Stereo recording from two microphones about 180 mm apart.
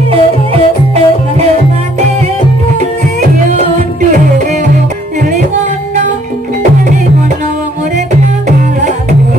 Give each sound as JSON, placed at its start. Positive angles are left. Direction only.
{"t": 0.1, "sound": "music", "side_deg": -30}